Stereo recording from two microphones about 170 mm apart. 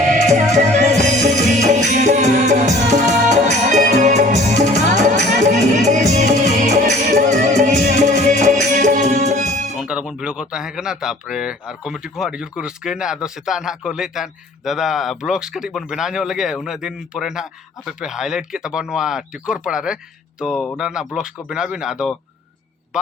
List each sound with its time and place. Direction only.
0.1 s music: 45° right (ahead or behind)
9.7 s speech: 5° right (ahead or behind)